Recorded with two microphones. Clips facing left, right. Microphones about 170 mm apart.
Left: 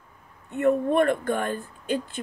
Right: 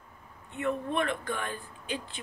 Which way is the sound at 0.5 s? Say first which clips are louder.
Left 10 dB; 45° left (ahead or behind).